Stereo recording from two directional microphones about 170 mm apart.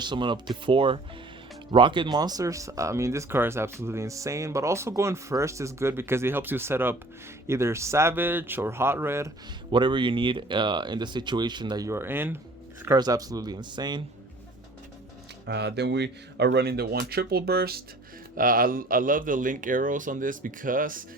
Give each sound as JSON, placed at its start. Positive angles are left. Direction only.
{"t": 0.0, "sound": "speech", "side_deg": -25}
{"t": 9.7, "sound": "speech", "side_deg": -30}
{"t": 15.4, "sound": "speech", "side_deg": -80}